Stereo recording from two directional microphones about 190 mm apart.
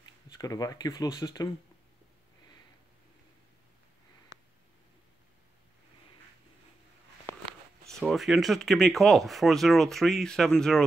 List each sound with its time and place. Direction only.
0.0 s speech: 20° left (ahead or behind)
8.0 s speech: centre (ahead or behind)